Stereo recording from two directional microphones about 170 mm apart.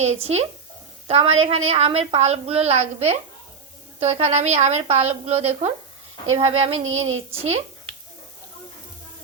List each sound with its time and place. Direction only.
0.0 s a woman's voice: 40° right (ahead or behind)